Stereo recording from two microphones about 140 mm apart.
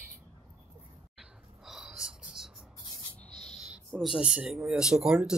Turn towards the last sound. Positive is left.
turn(degrees=-5)  # may be behind; listen again after turning